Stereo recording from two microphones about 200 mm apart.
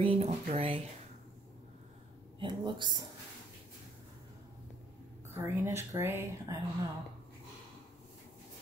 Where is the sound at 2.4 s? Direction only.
20° right (ahead or behind).